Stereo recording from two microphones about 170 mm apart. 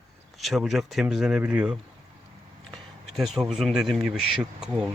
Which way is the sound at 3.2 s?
Centre (ahead or behind).